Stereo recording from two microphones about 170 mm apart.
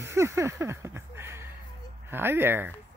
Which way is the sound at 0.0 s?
15° right (ahead or behind).